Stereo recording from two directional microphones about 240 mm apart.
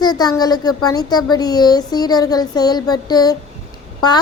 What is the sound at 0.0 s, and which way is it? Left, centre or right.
Child singing, centre.